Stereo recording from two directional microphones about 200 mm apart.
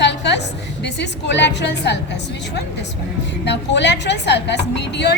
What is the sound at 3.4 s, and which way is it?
A woman's voice, 60° left (ahead or behind).